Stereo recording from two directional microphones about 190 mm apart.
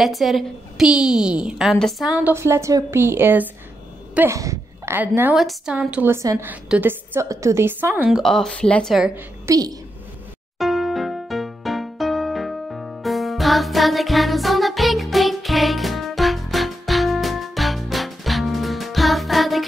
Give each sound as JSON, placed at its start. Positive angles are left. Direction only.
{"t": 0.0, "sound": "a woman's voice", "side_deg": 0}
{"t": 9.5, "sound": "a woman's voice", "side_deg": -20}
{"t": 10.6, "sound": "music", "side_deg": 0}